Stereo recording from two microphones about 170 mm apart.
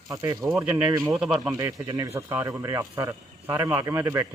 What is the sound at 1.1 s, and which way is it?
Speech, 5° right (ahead or behind).